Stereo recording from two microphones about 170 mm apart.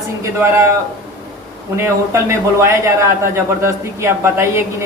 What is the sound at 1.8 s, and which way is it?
A woman's voice, 15° right (ahead or behind).